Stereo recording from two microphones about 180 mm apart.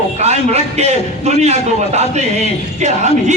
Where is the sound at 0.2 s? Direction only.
40° right (ahead or behind).